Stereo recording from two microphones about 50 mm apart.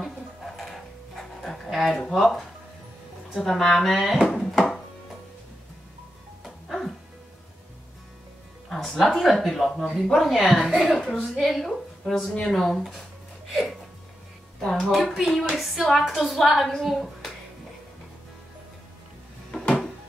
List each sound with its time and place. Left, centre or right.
0.0 s dog: centre
1.7 s a woman's voice: centre
6.4 s music: centre
8.6 s a woman's voice: centre
12.3 s speech: centre
12.5 s a woman's voice: centre
13.5 s a sound: centre
14.6 s speech: centre
14.9 s a woman's voice: centre